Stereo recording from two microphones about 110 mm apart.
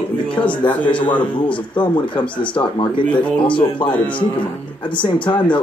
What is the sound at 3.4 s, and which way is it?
Speech, 50° left (ahead or behind).